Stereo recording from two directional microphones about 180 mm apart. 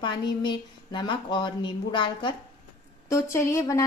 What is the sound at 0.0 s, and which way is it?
A woman's voice, 25° left (ahead or behind).